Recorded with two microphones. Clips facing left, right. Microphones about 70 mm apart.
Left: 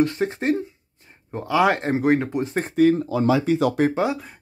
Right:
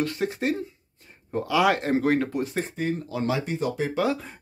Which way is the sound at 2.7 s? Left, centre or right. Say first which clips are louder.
Left 11 dB; left.